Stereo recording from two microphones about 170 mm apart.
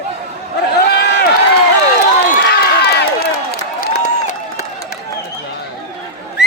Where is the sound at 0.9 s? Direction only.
75° left (ahead or behind).